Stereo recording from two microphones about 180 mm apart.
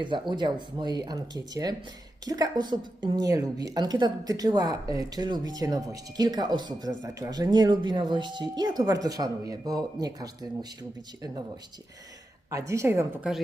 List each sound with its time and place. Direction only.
0.0 s a woman's voice: 25° right (ahead or behind)
12.5 s a woman's voice: 15° right (ahead or behind)